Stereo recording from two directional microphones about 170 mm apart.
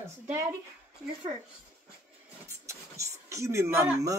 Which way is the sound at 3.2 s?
15° right (ahead or behind).